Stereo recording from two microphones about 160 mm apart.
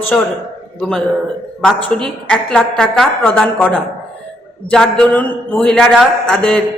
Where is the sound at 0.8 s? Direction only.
5° left (ahead or behind).